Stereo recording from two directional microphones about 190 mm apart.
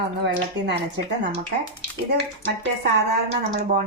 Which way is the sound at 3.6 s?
45° right (ahead or behind).